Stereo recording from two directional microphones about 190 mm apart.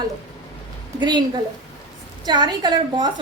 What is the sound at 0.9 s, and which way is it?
Speech, 25° right (ahead or behind).